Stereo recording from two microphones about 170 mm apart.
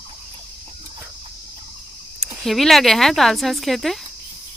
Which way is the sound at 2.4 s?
Centre (ahead or behind).